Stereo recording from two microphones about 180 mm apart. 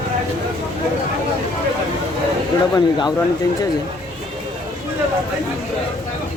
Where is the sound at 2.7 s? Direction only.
20° left (ahead or behind).